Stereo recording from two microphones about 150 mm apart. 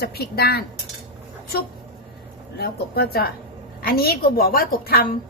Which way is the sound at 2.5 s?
90° left.